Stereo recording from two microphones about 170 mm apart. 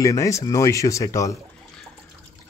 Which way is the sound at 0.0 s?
20° left (ahead or behind).